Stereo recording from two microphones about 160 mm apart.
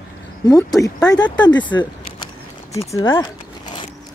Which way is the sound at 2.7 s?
25° left (ahead or behind).